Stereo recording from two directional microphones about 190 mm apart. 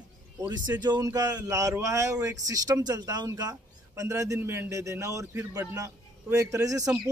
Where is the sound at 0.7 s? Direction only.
20° right (ahead or behind).